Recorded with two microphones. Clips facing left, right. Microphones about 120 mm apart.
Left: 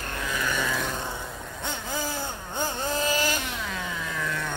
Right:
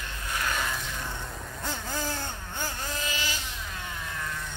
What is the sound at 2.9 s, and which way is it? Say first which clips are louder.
Vehicle: left 8 dB; 40° left (ahead or behind).